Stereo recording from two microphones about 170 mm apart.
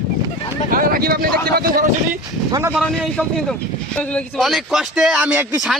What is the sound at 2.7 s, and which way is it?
Speech, 5° left (ahead or behind).